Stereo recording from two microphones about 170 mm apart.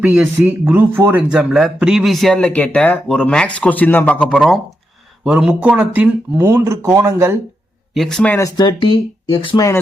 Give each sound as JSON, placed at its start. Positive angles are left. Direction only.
{"t": 0.0, "sound": "a man's voice", "side_deg": -10}
{"t": 7.9, "sound": "a man's voice", "side_deg": 0}
{"t": 8.4, "sound": "speech", "side_deg": 20}